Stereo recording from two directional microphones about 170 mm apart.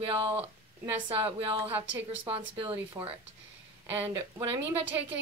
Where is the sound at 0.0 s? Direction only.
30° right (ahead or behind).